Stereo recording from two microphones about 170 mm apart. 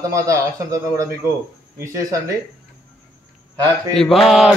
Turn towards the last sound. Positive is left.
turn(degrees=0)  # may be behind; listen again after turning